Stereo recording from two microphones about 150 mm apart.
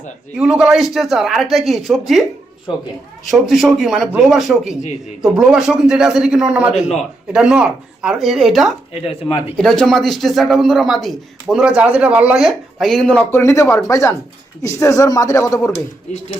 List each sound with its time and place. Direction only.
0.3 s speech: 5° right (ahead or behind)
3.2 s speech: centre (ahead or behind)
13.4 s speech: 20° left (ahead or behind)